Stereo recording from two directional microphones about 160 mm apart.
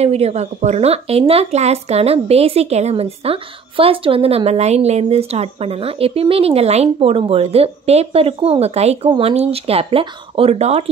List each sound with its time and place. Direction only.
0.0 s a woman's voice: 40° right (ahead or behind)